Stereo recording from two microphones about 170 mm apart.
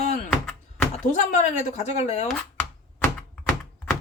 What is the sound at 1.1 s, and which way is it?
A woman's voice, 45° left (ahead or behind).